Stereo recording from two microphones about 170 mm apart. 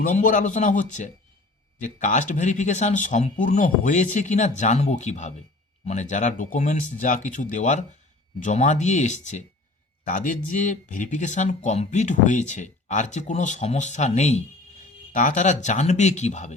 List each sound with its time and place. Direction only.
0.1 s speech: 50° left (ahead or behind)